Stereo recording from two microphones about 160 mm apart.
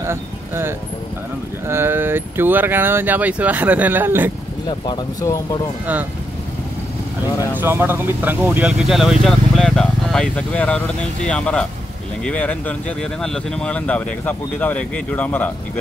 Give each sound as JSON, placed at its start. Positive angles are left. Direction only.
{"t": 0.0, "sound": "speech", "side_deg": -15}
{"t": 4.6, "sound": "speech", "side_deg": 25}
{"t": 7.5, "sound": "speech", "side_deg": -15}